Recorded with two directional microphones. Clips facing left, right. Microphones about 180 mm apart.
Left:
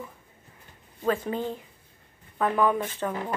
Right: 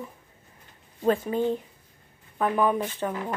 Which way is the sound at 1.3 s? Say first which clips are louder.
Right 5 dB; 15° right (ahead or behind).